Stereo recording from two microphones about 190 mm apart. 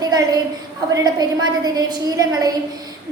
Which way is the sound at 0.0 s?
20° right (ahead or behind).